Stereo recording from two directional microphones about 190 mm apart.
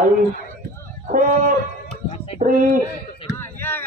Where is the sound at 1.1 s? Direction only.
45° right (ahead or behind).